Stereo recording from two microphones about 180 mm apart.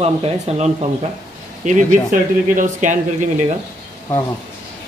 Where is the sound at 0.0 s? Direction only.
35° right (ahead or behind).